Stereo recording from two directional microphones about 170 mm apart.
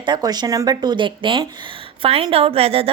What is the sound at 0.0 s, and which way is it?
Speech, 25° right (ahead or behind).